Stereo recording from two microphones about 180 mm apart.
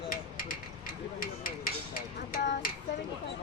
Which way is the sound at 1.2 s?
55° left (ahead or behind).